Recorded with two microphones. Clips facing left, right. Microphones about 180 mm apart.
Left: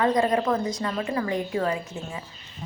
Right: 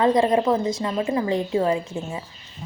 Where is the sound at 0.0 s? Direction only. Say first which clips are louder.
Right 4 dB; 25° right (ahead or behind).